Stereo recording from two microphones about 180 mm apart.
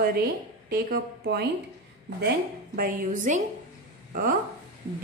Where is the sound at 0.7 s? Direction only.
55° right (ahead or behind).